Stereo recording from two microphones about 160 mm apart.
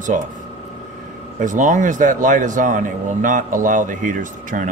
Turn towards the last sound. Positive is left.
turn(degrees=-55)  # may be behind; listen again after turning